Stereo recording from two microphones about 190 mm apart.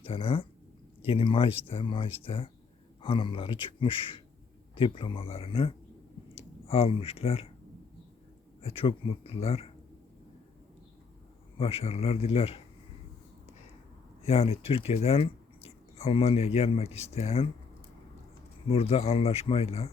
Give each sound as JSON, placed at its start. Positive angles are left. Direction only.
{"t": 0.0, "sound": "speech", "side_deg": 30}
{"t": 8.6, "sound": "speech", "side_deg": 30}
{"t": 11.5, "sound": "speech", "side_deg": 30}
{"t": 14.3, "sound": "speech", "side_deg": 30}
{"t": 18.7, "sound": "speech", "side_deg": 30}